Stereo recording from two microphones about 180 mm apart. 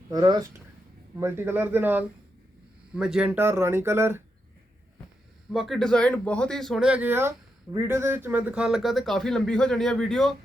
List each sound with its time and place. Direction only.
0.1 s speech: 20° right (ahead or behind)
5.5 s speech: centre (ahead or behind)